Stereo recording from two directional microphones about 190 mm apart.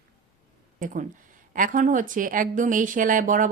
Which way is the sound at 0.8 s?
45° right (ahead or behind).